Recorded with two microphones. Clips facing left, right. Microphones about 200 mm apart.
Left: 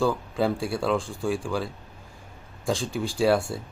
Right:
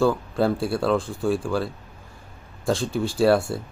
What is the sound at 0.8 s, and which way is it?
Speech, centre (ahead or behind).